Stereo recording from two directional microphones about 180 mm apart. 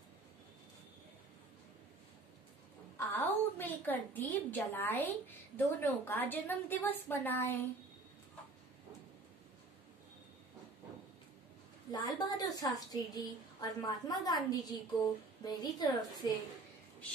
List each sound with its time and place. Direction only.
3.1 s a sound: 10° left (ahead or behind)
5.8 s a woman's voice: 10° left (ahead or behind)
11.9 s a woman's voice: 20° left (ahead or behind)